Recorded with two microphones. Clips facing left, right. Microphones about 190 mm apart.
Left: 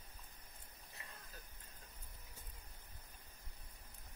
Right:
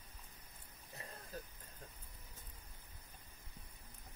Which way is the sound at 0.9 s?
40° right (ahead or behind).